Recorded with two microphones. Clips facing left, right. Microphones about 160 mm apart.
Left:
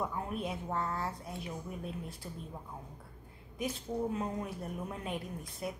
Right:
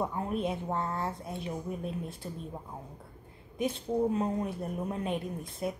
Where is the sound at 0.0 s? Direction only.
25° right (ahead or behind).